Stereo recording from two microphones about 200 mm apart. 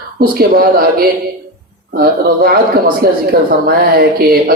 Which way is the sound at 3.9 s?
50° right (ahead or behind).